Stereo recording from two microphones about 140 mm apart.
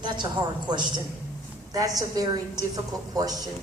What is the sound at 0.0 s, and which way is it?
A woman's voice, 30° right (ahead or behind).